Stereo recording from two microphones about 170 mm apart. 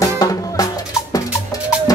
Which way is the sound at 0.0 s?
20° left (ahead or behind).